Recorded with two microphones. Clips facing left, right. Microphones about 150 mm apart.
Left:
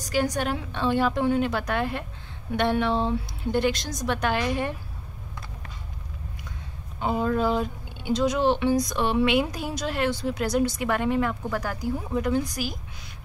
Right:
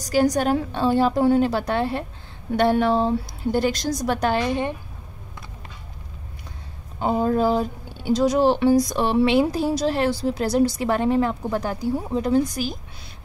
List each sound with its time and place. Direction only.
0.0 s speech: 40° right (ahead or behind)
7.0 s speech: 40° right (ahead or behind)